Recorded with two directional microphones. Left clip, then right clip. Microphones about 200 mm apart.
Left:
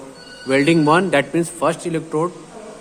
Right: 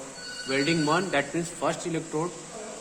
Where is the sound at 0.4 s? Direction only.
55° left (ahead or behind).